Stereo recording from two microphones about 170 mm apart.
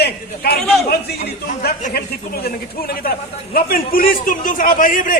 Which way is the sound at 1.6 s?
70° left (ahead or behind).